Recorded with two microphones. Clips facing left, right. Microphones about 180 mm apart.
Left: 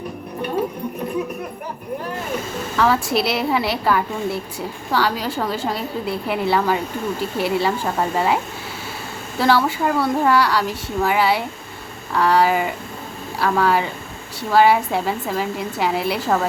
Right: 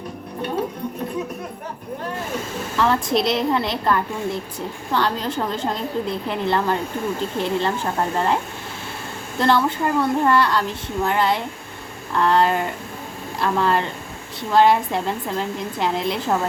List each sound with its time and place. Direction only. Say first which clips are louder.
2.7 s a woman's voice: left 1 dB; 5° left (ahead or behind)
9.4 s a woman's voice: left 1 dB; 5° left (ahead or behind)